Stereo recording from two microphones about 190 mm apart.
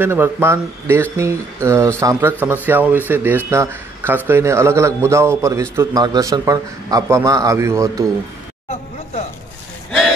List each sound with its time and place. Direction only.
0.0 s a man's voice: 10° right (ahead or behind)
9.8 s vehicle: centre (ahead or behind)